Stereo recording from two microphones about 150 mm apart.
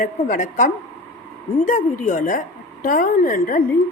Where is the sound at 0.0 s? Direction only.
60° left (ahead or behind).